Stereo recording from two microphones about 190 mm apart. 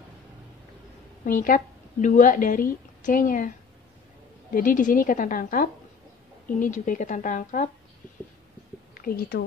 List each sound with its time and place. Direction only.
1.2 s a woman's voice: 45° left (ahead or behind)
4.6 s a woman's voice: 45° left (ahead or behind)
8.9 s a woman's voice: 50° left (ahead or behind)